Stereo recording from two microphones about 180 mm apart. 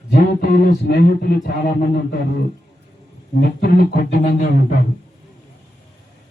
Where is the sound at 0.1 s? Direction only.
55° left (ahead or behind).